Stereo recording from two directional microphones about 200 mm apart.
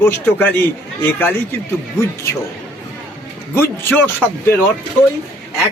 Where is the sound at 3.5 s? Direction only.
10° left (ahead or behind).